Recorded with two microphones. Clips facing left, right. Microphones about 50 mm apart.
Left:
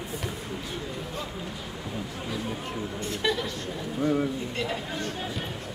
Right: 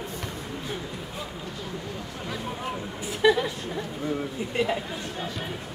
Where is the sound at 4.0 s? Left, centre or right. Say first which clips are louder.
Left 6 dB; centre.